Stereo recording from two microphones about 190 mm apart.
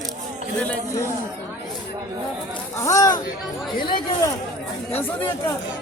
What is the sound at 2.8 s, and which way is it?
Speech, 15° left (ahead or behind).